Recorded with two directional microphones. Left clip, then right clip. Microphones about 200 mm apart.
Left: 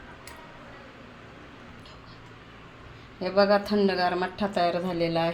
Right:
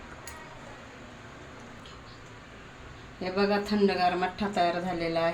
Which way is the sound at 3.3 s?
30° left (ahead or behind).